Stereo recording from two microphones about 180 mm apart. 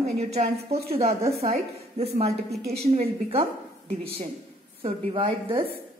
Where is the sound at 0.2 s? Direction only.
35° right (ahead or behind).